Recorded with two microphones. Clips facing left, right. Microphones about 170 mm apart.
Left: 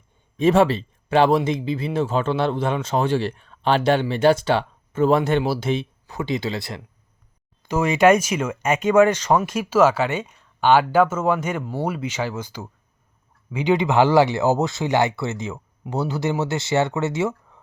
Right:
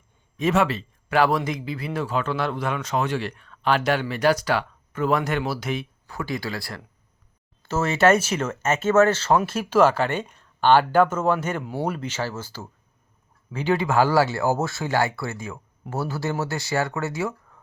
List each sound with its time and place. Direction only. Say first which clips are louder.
0.3 s speech: left 5 dB; 30° left (ahead or behind); by 11.3 s 10° left (ahead or behind)
11.6 s speech: left 1 dB; 5° right (ahead or behind)
11.9 s speech: left 2 dB; 10° left (ahead or behind)